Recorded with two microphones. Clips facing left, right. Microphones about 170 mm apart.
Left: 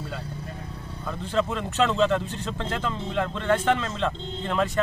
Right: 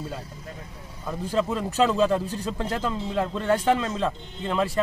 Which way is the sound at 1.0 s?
10° right (ahead or behind).